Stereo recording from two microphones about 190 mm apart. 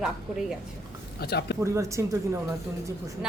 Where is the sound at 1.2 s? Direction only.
55° left (ahead or behind).